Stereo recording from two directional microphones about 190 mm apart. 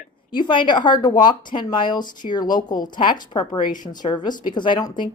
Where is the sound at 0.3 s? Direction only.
25° left (ahead or behind).